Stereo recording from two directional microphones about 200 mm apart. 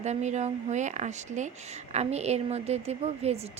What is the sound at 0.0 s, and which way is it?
Speech, 35° right (ahead or behind).